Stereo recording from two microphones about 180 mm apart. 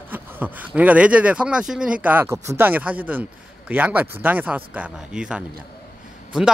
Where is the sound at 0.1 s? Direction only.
10° right (ahead or behind).